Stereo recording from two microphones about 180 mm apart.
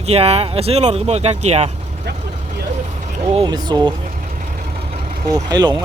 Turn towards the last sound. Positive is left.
turn(degrees=-20)  # may be behind; listen again after turning